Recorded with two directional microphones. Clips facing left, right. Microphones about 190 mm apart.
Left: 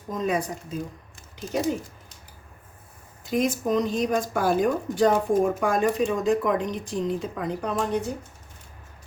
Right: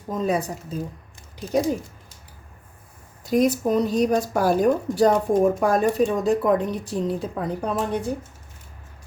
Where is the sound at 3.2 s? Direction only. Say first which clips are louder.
Right 4 dB; 40° right (ahead or behind).